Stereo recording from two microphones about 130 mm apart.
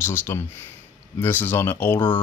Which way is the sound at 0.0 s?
15° left (ahead or behind).